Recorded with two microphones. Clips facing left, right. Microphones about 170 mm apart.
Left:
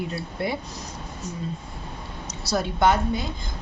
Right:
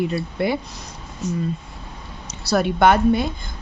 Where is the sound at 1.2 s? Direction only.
90° right.